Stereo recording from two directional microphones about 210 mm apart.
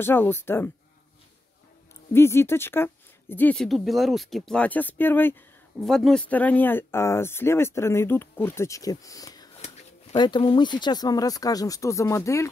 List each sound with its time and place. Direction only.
0.0 s speech: 10° left (ahead or behind)
2.1 s speech: 10° left (ahead or behind)